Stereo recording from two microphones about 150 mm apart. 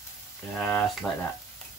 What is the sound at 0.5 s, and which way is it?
Speech, centre (ahead or behind).